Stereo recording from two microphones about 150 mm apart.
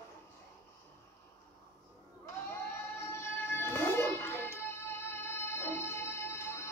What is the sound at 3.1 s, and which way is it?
Music, 15° left (ahead or behind).